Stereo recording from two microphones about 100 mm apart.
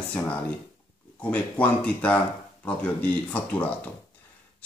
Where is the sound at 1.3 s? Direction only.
10° left (ahead or behind).